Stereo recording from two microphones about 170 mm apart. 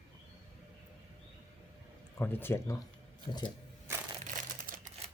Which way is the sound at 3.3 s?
25° left (ahead or behind).